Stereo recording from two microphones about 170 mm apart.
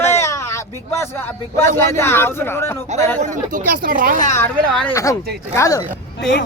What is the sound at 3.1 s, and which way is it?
Speech, 45° right (ahead or behind).